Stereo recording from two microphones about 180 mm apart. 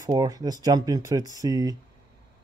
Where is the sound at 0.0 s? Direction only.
20° right (ahead or behind).